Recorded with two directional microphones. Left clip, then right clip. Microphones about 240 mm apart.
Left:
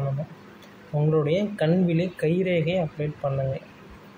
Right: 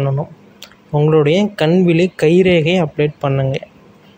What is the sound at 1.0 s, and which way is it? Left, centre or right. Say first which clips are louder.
A man's voice: right 11 dB; right.